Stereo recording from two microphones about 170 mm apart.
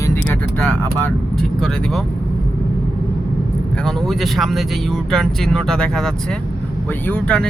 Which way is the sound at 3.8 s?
Centre (ahead or behind).